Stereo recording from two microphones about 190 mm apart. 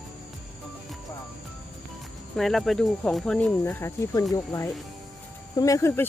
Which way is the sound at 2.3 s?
Centre (ahead or behind).